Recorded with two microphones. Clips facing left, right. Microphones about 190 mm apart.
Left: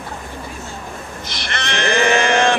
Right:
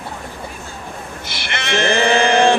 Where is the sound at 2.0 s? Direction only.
30° right (ahead or behind).